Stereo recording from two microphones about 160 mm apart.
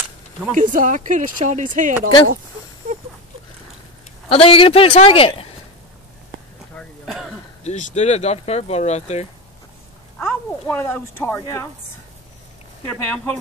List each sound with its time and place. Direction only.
0.6 s speech: 55° right (ahead or behind)
4.3 s a man's voice: 35° left (ahead or behind)
6.7 s throat clearing: centre (ahead or behind)
7.6 s speech: 45° left (ahead or behind)
10.2 s speech: 15° left (ahead or behind)
12.8 s speech: 10° left (ahead or behind)